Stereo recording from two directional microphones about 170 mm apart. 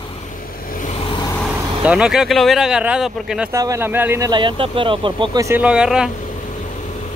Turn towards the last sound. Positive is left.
turn(degrees=-5)  # may be behind; listen again after turning